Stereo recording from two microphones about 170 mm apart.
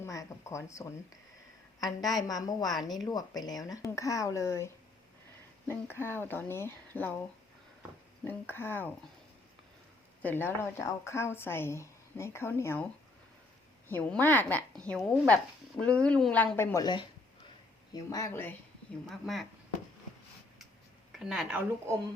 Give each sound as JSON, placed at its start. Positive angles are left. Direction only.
{"t": 0.0, "sound": "a woman's voice", "side_deg": 20}
{"t": 8.3, "sound": "a woman's voice", "side_deg": 10}
{"t": 10.2, "sound": "a woman's voice", "side_deg": 10}
{"t": 16.7, "sound": "a woman's voice", "side_deg": 25}
{"t": 19.0, "sound": "speech", "side_deg": 0}
{"t": 21.1, "sound": "a woman's voice", "side_deg": -5}